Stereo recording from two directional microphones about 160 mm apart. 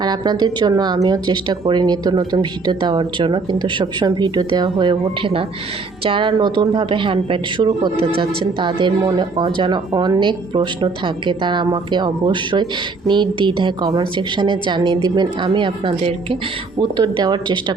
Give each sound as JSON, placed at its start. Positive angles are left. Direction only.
{"t": 0.0, "sound": "a woman's voice", "side_deg": -25}
{"t": 17.0, "sound": "speech", "side_deg": -25}